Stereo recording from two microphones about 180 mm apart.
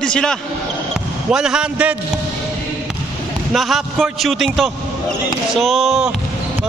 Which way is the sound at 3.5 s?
Centre (ahead or behind).